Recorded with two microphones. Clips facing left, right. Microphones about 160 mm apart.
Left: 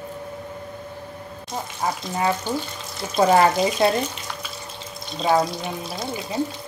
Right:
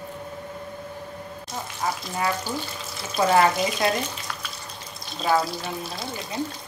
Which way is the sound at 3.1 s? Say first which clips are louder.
Left 3 dB; 30° left (ahead or behind).